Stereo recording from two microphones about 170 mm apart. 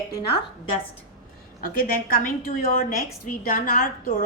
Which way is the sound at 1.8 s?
45° left (ahead or behind).